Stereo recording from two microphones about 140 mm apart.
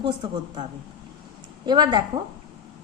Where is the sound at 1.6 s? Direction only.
30° right (ahead or behind).